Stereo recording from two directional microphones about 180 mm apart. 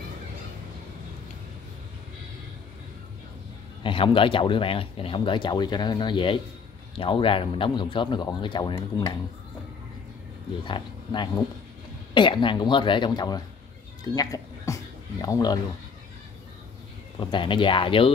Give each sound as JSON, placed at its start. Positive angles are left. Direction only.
{"t": 3.8, "sound": "speech", "side_deg": 30}
{"t": 10.6, "sound": "speech", "side_deg": 25}
{"t": 14.0, "sound": "a sound", "side_deg": 20}
{"t": 17.2, "sound": "speech", "side_deg": 25}